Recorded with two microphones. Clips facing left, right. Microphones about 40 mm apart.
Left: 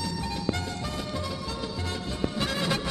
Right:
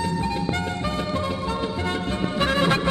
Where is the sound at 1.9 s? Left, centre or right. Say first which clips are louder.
Right 6 dB; right.